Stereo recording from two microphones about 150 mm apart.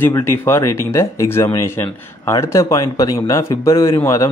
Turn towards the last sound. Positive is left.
turn(degrees=20)  # may be behind; listen again after turning